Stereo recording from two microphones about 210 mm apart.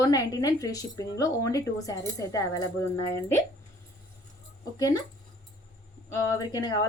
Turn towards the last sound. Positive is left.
turn(degrees=20)  # may be behind; listen again after turning